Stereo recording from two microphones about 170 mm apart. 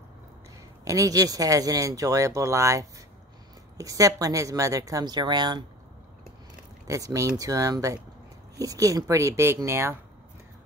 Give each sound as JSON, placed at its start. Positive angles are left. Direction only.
{"t": 0.8, "sound": "speech", "side_deg": -20}
{"t": 6.9, "sound": "speech", "side_deg": -20}